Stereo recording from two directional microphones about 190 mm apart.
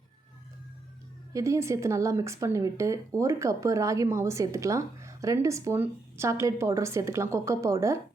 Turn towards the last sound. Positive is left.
turn(degrees=-15)  # may be behind; listen again after turning